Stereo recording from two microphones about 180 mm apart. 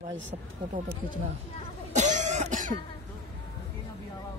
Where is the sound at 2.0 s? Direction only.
40° right (ahead or behind).